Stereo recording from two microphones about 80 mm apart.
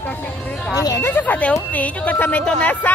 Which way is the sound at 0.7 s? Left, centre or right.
Left.